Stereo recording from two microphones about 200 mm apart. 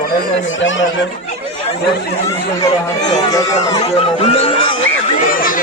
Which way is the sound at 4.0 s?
30° left (ahead or behind).